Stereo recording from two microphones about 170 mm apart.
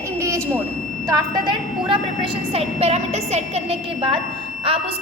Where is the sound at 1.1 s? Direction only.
25° right (ahead or behind).